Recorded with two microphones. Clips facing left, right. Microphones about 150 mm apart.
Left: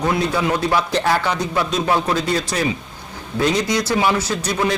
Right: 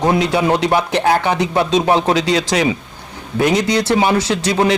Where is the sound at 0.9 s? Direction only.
55° right (ahead or behind).